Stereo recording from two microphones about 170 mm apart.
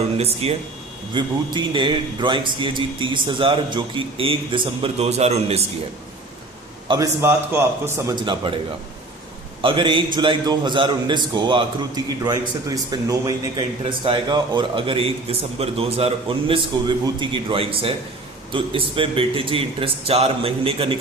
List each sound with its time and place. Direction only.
0.2 s a man's voice: 35° right (ahead or behind)
6.8 s a man's voice: 25° right (ahead or behind)
9.6 s a man's voice: 30° right (ahead or behind)